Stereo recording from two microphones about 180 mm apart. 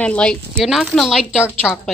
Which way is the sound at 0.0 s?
5° left (ahead or behind).